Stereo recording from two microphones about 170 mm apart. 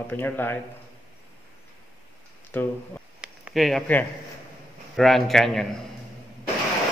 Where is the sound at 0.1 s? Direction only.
10° left (ahead or behind).